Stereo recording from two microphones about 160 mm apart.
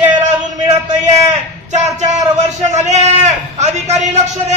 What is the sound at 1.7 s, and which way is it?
A man's voice, 45° right (ahead or behind).